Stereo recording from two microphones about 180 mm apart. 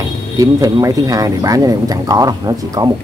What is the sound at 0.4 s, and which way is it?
Speech, 20° right (ahead or behind).